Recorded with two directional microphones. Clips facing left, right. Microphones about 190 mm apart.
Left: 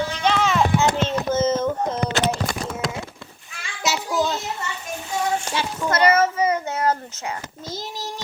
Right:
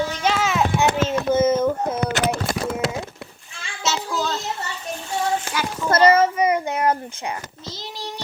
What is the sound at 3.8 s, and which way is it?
Child singing, 15° left (ahead or behind).